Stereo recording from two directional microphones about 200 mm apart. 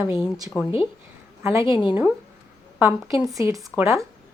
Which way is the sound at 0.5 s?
15° left (ahead or behind).